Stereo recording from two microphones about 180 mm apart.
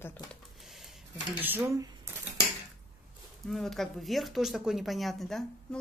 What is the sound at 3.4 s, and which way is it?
Speech, centre (ahead or behind).